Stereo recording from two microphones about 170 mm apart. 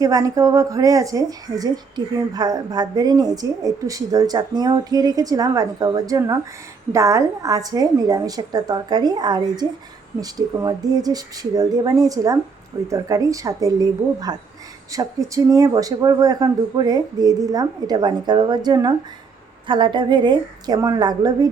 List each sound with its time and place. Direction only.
0.0 s a woman's voice: 20° right (ahead or behind)